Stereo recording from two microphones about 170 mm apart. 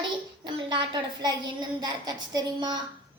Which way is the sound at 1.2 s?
25° right (ahead or behind).